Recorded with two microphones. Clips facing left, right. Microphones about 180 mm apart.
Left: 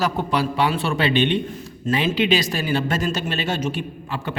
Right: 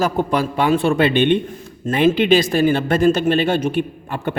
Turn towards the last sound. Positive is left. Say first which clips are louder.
# right 4 dB
turn(degrees=-50)  # may be behind; listen again after turning